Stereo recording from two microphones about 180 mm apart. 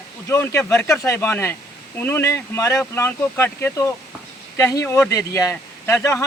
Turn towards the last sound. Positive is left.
turn(degrees=15)  # may be behind; listen again after turning